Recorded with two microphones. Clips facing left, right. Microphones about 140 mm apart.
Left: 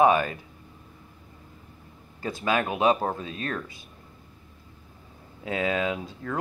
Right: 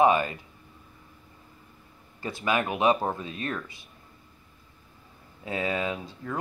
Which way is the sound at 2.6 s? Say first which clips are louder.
Left 1 dB; 20° left (ahead or behind).